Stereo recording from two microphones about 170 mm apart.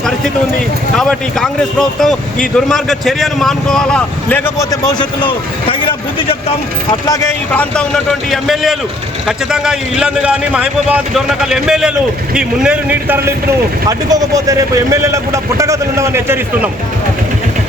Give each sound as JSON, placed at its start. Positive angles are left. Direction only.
{"t": 0.9, "sound": "speech", "side_deg": 5}
{"t": 7.1, "sound": "a man's voice", "side_deg": 10}